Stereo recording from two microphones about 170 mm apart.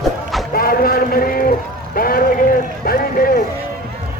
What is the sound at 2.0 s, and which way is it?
Run, 60° left (ahead or behind).